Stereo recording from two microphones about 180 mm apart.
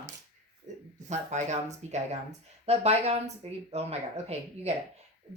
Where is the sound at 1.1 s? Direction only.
40° right (ahead or behind).